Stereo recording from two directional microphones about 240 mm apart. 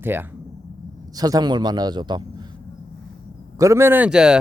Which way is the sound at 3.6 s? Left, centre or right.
Centre.